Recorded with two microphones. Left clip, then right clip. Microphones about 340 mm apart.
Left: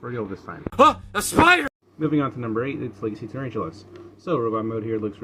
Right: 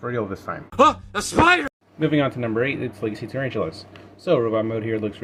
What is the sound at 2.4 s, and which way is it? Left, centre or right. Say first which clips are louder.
Speech: right 4 dB; centre.